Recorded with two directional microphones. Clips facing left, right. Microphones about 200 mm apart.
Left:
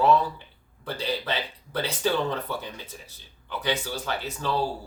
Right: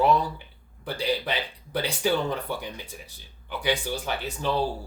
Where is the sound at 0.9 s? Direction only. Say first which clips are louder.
Right 2 dB; 15° right (ahead or behind).